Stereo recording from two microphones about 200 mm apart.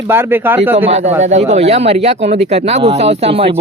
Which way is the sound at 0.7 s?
35° right (ahead or behind).